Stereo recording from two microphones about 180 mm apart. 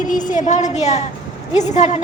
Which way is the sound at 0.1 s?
45° left (ahead or behind).